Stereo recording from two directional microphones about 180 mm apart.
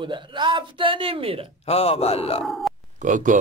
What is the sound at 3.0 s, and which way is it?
Speech, 45° right (ahead or behind).